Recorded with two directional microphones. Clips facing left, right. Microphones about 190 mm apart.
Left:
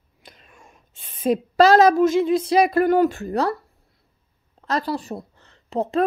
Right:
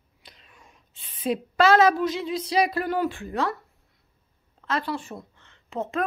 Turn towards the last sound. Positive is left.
turn(degrees=35)  # may be behind; listen again after turning